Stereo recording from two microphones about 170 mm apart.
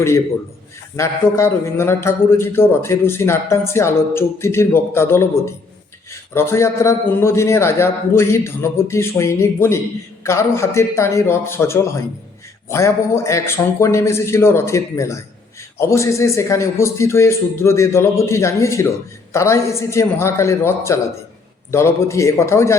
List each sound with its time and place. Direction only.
0.9 s a man's voice: 15° left (ahead or behind)